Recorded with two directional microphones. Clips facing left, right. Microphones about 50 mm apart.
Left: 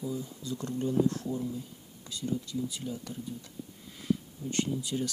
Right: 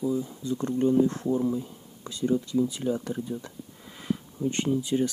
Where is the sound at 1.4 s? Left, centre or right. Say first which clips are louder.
Right 9 dB; right.